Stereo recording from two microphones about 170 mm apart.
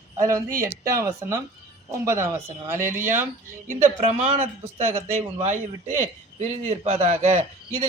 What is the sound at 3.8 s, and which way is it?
A man's voice, 40° right (ahead or behind).